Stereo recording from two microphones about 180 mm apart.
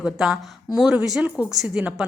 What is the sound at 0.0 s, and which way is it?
A woman's voice, centre (ahead or behind).